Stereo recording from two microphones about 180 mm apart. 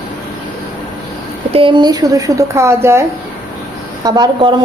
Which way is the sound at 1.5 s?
30° right (ahead or behind).